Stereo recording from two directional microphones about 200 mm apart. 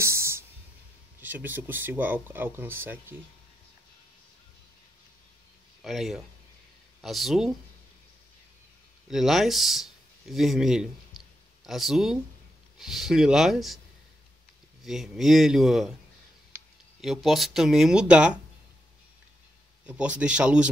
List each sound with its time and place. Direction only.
0.0 s music: 15° right (ahead or behind)
1.2 s speech: 10° right (ahead or behind)
5.8 s speech: centre (ahead or behind)
9.1 s speech: centre (ahead or behind)
14.8 s speech: centre (ahead or behind)
17.0 s speech: centre (ahead or behind)
19.9 s speech: 5° right (ahead or behind)